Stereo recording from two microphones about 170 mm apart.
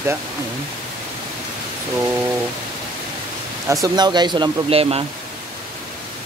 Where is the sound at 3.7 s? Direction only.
20° right (ahead or behind).